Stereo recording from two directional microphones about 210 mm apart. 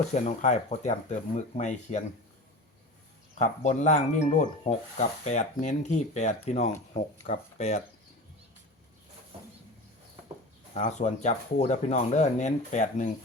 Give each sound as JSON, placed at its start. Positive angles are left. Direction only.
{"t": 0.1, "sound": "speech", "side_deg": 35}
{"t": 3.3, "sound": "speech", "side_deg": 35}
{"t": 10.8, "sound": "speech", "side_deg": 35}